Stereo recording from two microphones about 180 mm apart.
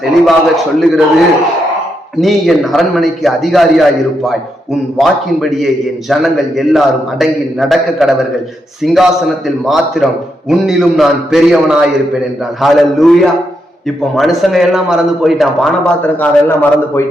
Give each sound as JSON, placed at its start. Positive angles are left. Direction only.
{"t": 0.0, "sound": "a man's voice", "side_deg": 0}
{"t": 2.2, "sound": "a man's voice", "side_deg": 0}
{"t": 16.2, "sound": "a man's voice", "side_deg": 10}